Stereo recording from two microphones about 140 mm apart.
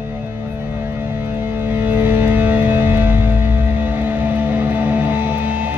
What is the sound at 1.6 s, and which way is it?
Music, 15° right (ahead or behind).